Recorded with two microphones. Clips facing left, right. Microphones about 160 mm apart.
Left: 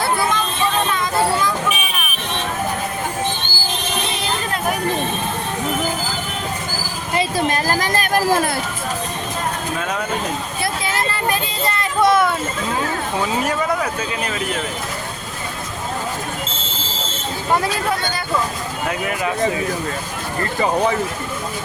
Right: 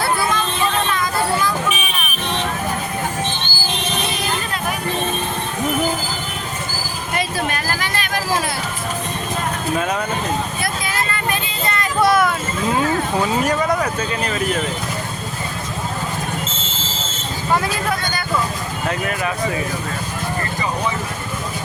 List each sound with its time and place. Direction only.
7.1 s a sound: 30° left (ahead or behind); by 8.4 s 50° left (ahead or behind)
10.6 s vehicle: 30° left (ahead or behind)
13.4 s speech: 5° left (ahead or behind)
17.6 s speech: 30° left (ahead or behind)
18.9 s speech: 15° left (ahead or behind)